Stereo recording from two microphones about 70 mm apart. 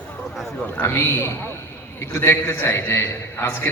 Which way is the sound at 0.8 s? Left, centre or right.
Left.